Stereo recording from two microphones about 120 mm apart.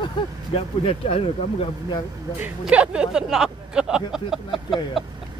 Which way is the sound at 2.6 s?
10° right (ahead or behind).